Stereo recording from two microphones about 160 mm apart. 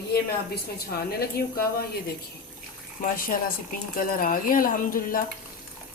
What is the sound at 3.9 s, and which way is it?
Speech, 60° left (ahead or behind).